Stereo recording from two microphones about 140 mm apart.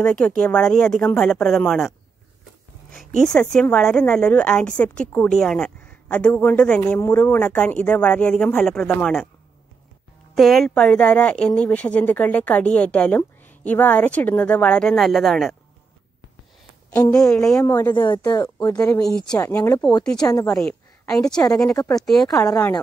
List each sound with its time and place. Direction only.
0.0 s speech: 5° left (ahead or behind)
3.2 s a woman's voice: 5° left (ahead or behind)
10.3 s a woman's voice: centre (ahead or behind)
17.0 s speech: 25° left (ahead or behind)
20.0 s speech: 5° left (ahead or behind)
20.2 s speech: 25° left (ahead or behind)
21.1 s speech: 5° left (ahead or behind)
21.7 s speech: 25° left (ahead or behind)
22.0 s speech: centre (ahead or behind)